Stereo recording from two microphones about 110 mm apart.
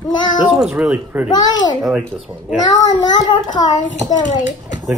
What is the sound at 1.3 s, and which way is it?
Speech, 40° left (ahead or behind).